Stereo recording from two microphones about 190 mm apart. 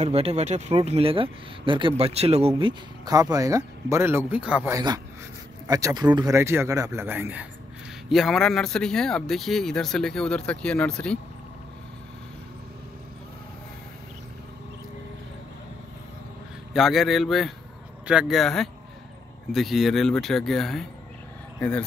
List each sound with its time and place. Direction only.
0.0 s speech: 30° right (ahead or behind)
3.1 s speech: 20° right (ahead or behind)
4.7 s speech: 20° right (ahead or behind)
8.1 s speech: centre (ahead or behind)
16.7 s speech: centre (ahead or behind)